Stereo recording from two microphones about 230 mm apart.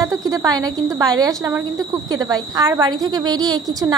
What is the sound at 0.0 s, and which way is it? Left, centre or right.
Speech, centre.